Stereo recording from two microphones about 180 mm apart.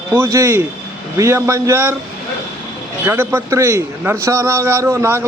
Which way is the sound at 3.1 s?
15° right (ahead or behind).